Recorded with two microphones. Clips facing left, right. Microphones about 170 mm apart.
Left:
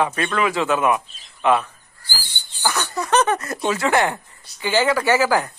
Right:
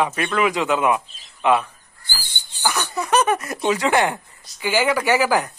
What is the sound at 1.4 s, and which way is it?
Crow, 15° right (ahead or behind).